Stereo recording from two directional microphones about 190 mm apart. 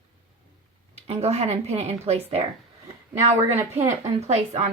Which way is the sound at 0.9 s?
35° right (ahead or behind).